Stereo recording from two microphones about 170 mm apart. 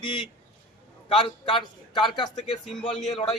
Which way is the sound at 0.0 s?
30° left (ahead or behind).